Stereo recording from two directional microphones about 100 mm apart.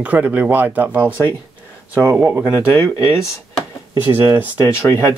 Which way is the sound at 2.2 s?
25° right (ahead or behind).